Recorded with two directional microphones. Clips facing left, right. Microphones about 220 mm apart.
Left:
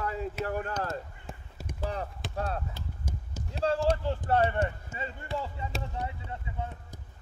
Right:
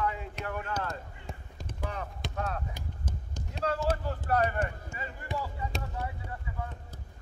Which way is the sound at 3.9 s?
25° left (ahead or behind).